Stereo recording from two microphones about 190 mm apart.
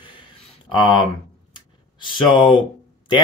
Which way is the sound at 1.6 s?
25° left (ahead or behind).